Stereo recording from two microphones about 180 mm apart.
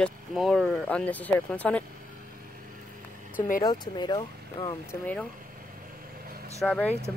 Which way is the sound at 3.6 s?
25° left (ahead or behind).